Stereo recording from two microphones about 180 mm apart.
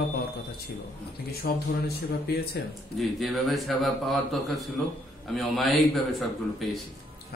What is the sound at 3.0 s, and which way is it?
A man's voice, centre (ahead or behind).